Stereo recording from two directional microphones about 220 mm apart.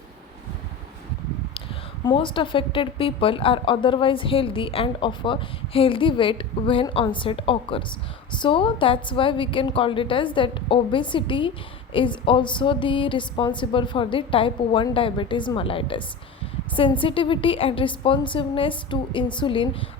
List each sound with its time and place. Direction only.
2.0 s a woman's voice: 25° left (ahead or behind)